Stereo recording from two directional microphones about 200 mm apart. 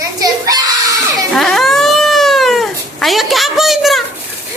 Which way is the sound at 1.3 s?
Centre (ahead or behind).